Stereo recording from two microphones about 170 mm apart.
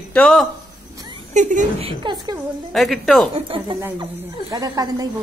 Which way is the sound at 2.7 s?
Centre (ahead or behind).